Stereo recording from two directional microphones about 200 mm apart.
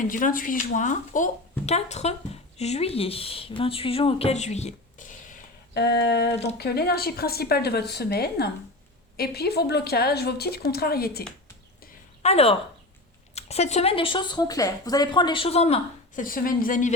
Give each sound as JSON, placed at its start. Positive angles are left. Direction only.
{"t": 0.0, "sound": "speech", "side_deg": 40}
{"t": 5.7, "sound": "a sound", "side_deg": 55}
{"t": 6.6, "sound": "speech", "side_deg": 55}
{"t": 12.2, "sound": "speech", "side_deg": 30}